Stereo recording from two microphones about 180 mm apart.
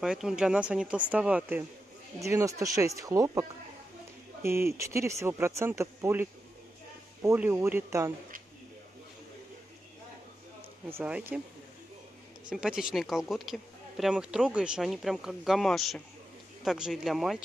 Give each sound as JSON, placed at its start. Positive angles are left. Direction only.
{"t": 0.0, "sound": "speech", "side_deg": -5}
{"t": 11.0, "sound": "speech", "side_deg": -10}
{"t": 12.4, "sound": "speech", "side_deg": -5}